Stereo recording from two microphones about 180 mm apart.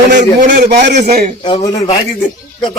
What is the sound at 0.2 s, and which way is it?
Speech, 45° right (ahead or behind).